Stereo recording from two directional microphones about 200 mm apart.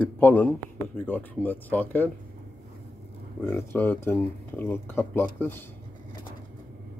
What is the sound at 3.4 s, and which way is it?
Speech, 10° left (ahead or behind).